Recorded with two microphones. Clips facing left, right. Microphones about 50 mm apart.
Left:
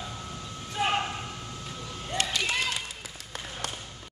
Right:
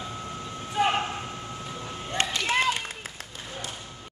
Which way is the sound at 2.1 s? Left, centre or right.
Right.